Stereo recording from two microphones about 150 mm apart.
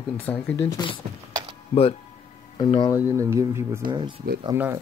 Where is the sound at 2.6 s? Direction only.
30° left (ahead or behind).